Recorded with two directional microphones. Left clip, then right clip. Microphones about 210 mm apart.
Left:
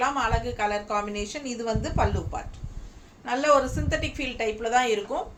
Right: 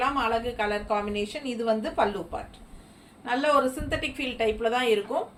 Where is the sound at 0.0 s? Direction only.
15° left (ahead or behind).